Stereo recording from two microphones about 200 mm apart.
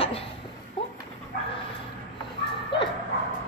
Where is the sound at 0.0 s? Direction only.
30° left (ahead or behind).